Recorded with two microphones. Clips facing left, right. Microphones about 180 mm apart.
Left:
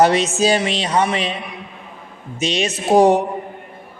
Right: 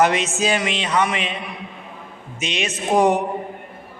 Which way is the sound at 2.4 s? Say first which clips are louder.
Left 5 dB; 35° left (ahead or behind).